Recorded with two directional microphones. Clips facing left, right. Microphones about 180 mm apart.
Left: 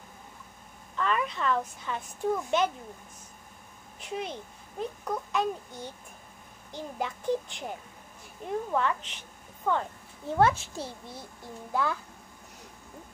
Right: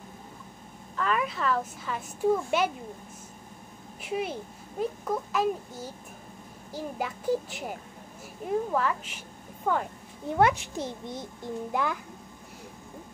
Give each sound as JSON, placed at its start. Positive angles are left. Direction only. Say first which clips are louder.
{"t": 0.9, "sound": "a child's voice", "louder": "right 1 dB", "side_deg": -5}
{"t": 4.0, "sound": "a child's voice", "louder": "right 4 dB", "side_deg": -10}
{"t": 8.7, "sound": "a child's voice", "louder": "right 1 dB", "side_deg": -5}